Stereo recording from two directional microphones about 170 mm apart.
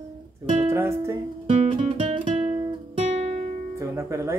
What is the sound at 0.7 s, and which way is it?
Speech, 15° right (ahead or behind).